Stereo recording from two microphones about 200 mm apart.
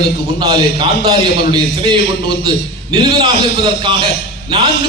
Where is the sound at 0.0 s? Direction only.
20° right (ahead or behind).